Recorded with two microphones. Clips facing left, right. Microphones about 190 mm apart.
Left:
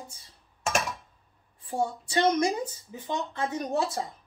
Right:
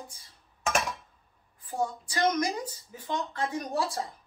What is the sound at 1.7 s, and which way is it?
Speech, 25° left (ahead or behind).